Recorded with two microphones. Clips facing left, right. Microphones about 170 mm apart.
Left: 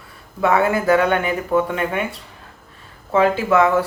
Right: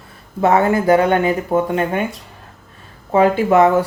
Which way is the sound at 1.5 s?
35° right (ahead or behind).